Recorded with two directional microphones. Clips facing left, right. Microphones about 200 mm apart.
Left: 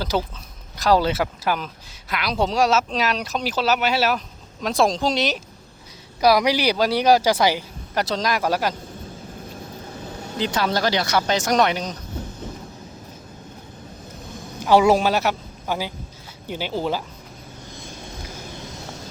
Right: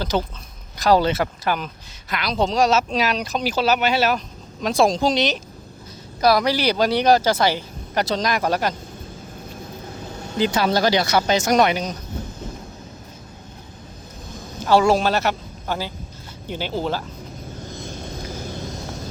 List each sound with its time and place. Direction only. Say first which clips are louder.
0.0 s speech: right 1 dB; 5° left (ahead or behind)
7.9 s speech: right 1 dB; centre (ahead or behind)
10.3 s speech: right 3 dB; 5° right (ahead or behind)
14.6 s speech: left 1 dB; 15° left (ahead or behind)